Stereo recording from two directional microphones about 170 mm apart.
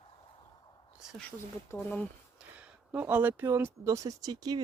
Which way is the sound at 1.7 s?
10° left (ahead or behind).